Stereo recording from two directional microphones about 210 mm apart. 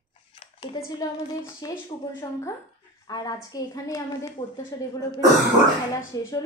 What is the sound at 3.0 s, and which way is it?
A woman's voice, 20° left (ahead or behind).